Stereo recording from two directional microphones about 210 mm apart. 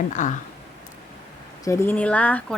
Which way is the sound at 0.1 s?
35° left (ahead or behind).